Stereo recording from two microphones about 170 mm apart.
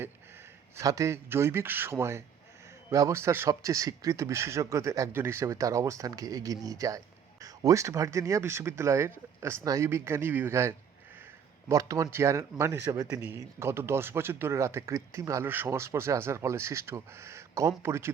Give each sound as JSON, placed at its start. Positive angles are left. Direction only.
{"t": 0.8, "sound": "a man's voice", "side_deg": -20}